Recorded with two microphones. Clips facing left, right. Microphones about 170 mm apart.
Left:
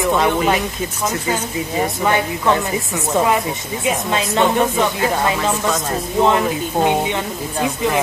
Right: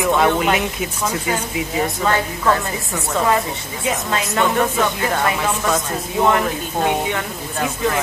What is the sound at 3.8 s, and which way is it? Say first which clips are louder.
A woman's voice: left 2 dB; 20° left (ahead or behind).